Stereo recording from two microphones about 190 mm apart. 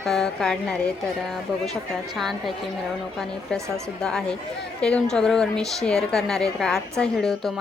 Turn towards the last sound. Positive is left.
turn(degrees=0)  # may be behind; listen again after turning